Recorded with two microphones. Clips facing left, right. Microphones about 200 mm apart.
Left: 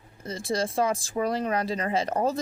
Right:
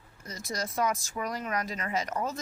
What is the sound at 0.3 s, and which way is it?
Speech, 30° left (ahead or behind).